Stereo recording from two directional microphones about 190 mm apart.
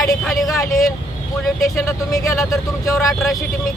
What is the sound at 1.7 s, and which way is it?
Speech, 15° left (ahead or behind).